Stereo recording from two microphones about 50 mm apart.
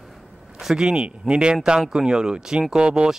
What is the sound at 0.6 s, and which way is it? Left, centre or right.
Speech, centre.